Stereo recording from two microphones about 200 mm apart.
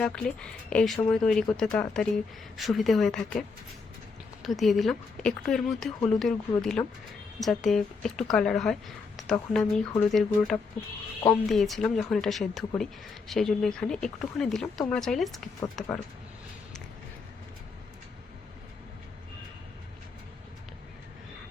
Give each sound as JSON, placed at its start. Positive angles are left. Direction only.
{"t": 0.0, "sound": "a woman's voice", "side_deg": 5}
{"t": 4.4, "sound": "a woman's voice", "side_deg": 0}